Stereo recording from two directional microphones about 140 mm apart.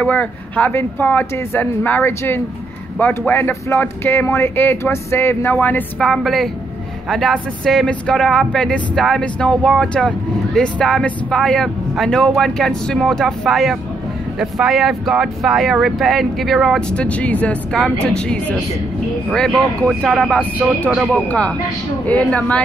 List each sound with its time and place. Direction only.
0.0 s speech: 10° left (ahead or behind)
21.1 s speech: 10° left (ahead or behind)